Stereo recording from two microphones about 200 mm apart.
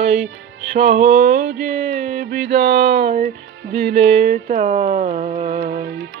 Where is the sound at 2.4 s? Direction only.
55° right (ahead or behind).